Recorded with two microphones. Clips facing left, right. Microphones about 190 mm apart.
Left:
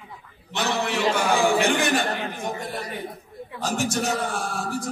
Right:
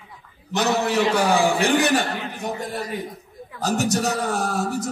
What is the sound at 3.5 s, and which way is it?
A man's voice, 40° right (ahead or behind).